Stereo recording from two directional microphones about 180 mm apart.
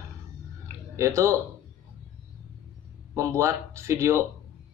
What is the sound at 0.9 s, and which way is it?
Speech, 15° right (ahead or behind).